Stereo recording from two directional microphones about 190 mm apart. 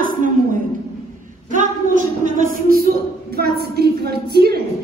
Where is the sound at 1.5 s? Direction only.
40° right (ahead or behind).